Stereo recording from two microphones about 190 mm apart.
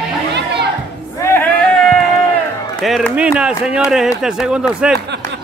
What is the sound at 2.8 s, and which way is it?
Speech, centre (ahead or behind).